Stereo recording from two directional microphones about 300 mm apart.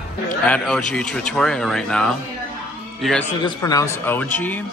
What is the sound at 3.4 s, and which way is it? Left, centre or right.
Speech, centre.